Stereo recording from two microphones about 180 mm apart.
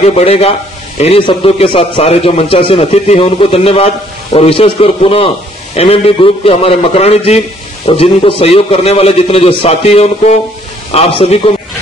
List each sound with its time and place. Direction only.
0.0 s a man's voice: 35° left (ahead or behind)